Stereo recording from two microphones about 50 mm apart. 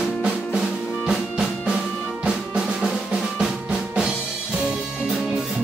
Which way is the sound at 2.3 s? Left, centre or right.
Centre.